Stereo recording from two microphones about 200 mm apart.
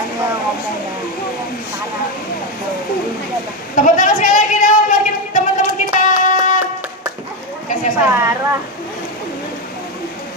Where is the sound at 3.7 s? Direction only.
40° left (ahead or behind).